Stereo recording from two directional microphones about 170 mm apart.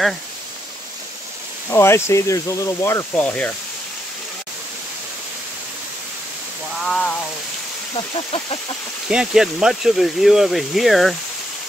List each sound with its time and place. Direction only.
1.7 s speech: 15° left (ahead or behind)
6.8 s frying: 5° left (ahead or behind)
7.9 s speech: 30° left (ahead or behind)
9.1 s speech: 5° right (ahead or behind)